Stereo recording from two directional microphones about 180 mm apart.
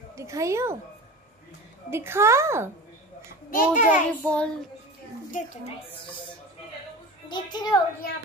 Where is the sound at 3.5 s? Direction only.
45° left (ahead or behind).